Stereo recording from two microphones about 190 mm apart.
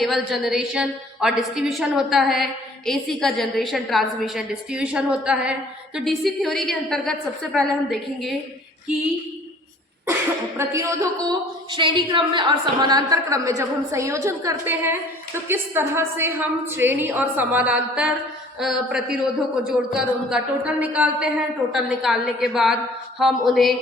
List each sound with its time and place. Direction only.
0.0 s a woman's voice: centre (ahead or behind)
10.6 s a woman's voice: 15° right (ahead or behind)